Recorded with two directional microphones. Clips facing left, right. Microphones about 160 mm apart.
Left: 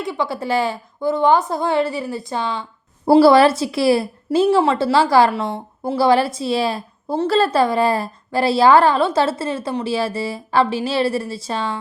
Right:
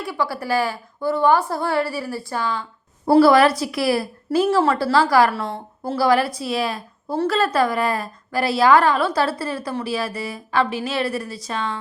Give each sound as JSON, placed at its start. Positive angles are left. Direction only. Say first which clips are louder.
{"t": 0.0, "sound": "a woman's voice", "louder": "left 2 dB", "side_deg": 20}
{"t": 6.0, "sound": "a woman's voice", "louder": "left 2 dB", "side_deg": 25}